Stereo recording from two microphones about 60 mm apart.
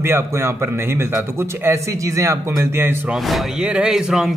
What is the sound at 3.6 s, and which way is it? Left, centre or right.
Speech, centre.